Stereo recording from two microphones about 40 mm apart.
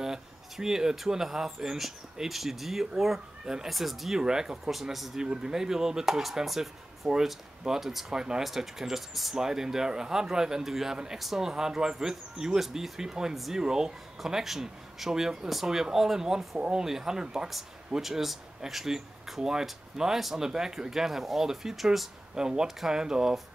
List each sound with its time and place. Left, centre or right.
0.0 s speech: centre
4.2 s speech: centre
4.9 s speech: centre
5.2 s speech: centre
8.1 s speech: centre
13.6 s speech: centre
18.0 s speech: centre
22.3 s speech: centre